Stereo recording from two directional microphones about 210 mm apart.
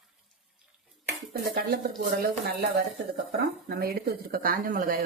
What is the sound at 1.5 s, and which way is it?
Speech, 45° right (ahead or behind).